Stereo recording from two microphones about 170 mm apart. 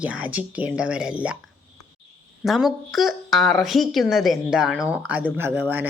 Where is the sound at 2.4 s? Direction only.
Centre (ahead or behind).